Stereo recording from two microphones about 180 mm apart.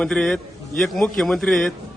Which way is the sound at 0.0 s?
5° left (ahead or behind).